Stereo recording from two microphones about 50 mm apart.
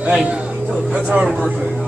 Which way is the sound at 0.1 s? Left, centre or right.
Centre.